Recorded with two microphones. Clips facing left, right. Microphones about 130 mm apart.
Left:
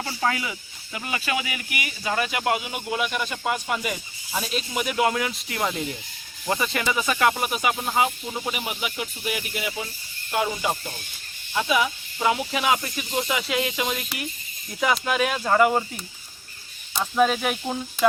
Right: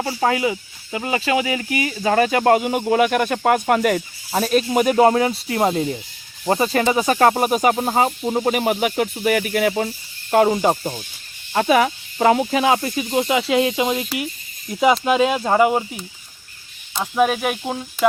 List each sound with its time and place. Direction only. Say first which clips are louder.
0.0 s speech: right 7 dB; 30° right (ahead or behind)
2.0 s speech: right 9 dB; 50° right (ahead or behind)
12.5 s speech: right 6 dB; 30° right (ahead or behind); by 17.7 s 15° right (ahead or behind)